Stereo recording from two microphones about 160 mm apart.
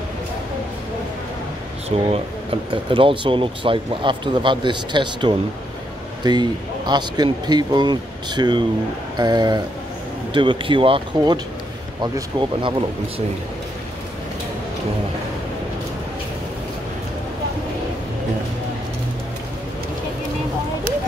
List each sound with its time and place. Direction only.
1.9 s speech: 40° right (ahead or behind)